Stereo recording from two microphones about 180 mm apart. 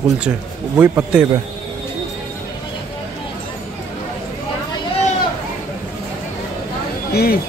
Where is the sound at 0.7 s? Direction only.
10° right (ahead or behind).